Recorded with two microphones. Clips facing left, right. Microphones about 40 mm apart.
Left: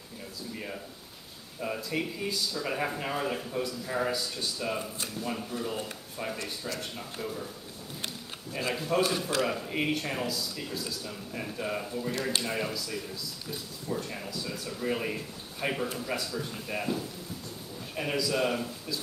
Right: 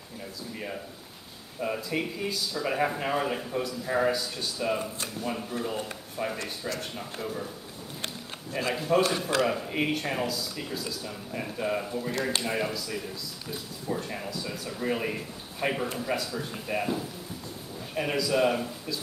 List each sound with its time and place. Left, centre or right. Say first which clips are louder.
1.6 s a man's voice: right 2 dB; centre
6.3 s speech: right 2 dB; centre
6.8 s speech: right 2 dB; centre
8.5 s speech: right 3 dB; centre